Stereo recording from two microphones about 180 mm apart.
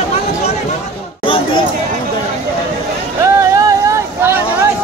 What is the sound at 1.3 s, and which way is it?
Chatter, 30° left (ahead or behind).